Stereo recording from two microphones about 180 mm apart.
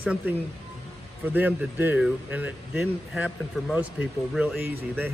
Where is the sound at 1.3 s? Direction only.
10° right (ahead or behind).